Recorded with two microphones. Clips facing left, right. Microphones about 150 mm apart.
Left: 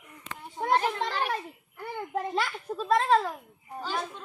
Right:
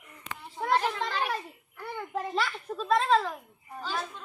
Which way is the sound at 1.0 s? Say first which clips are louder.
Left 1 dB; 20° left (ahead or behind).